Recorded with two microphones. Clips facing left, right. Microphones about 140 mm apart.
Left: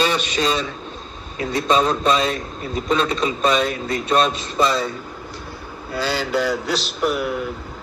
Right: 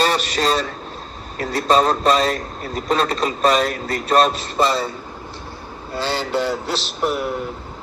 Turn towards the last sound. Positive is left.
turn(degrees=-35)  # may be behind; listen again after turning